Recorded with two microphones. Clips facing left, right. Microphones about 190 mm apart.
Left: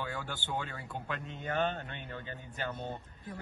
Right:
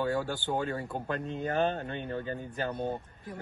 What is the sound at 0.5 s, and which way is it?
A man's voice, 45° right (ahead or behind).